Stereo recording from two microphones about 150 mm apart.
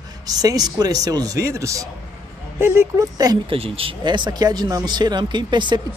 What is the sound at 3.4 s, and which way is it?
Speech, 40° right (ahead or behind).